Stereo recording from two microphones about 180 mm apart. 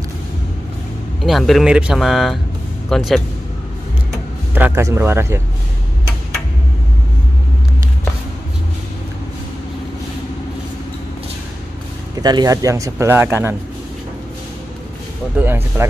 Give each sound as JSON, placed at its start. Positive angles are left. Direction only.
{"t": 1.2, "sound": "speech", "side_deg": 0}
{"t": 4.6, "sound": "speech", "side_deg": -10}
{"t": 12.2, "sound": "speech", "side_deg": -20}
{"t": 15.3, "sound": "speech", "side_deg": -10}